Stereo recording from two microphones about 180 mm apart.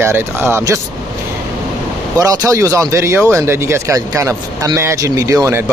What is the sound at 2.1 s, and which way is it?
Speech, 20° right (ahead or behind).